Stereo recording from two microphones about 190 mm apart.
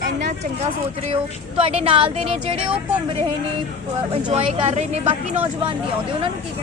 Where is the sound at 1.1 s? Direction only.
30° right (ahead or behind).